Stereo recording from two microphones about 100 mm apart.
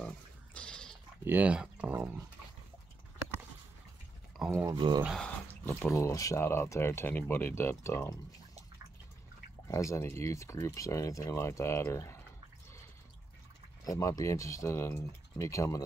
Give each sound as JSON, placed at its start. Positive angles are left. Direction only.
{"t": 0.6, "sound": "pig", "side_deg": 10}
{"t": 1.2, "sound": "speech", "side_deg": -15}
{"t": 4.4, "sound": "speech", "side_deg": 0}
{"t": 4.7, "sound": "speech", "side_deg": -55}
{"t": 5.5, "sound": "speech", "side_deg": 25}
{"t": 9.7, "sound": "speech", "side_deg": 30}
{"t": 13.8, "sound": "speech", "side_deg": 35}